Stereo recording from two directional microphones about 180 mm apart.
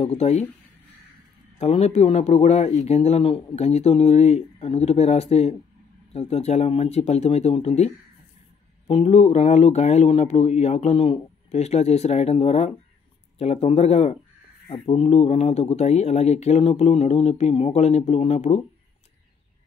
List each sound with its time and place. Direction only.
0.0 s speech: 35° left (ahead or behind)
1.6 s speech: 35° left (ahead or behind)